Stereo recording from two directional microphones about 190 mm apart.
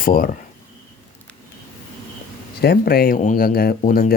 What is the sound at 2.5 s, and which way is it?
Speech, 55° left (ahead or behind).